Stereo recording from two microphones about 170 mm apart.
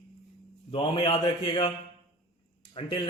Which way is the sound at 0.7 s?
30° left (ahead or behind).